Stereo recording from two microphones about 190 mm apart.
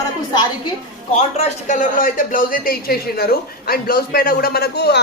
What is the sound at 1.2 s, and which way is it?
Speech, 35° left (ahead or behind).